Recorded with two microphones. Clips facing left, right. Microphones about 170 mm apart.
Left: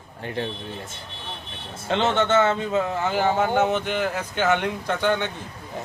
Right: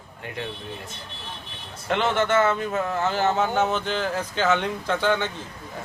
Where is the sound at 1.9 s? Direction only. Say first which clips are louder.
Left 1 dB; 25° left (ahead or behind).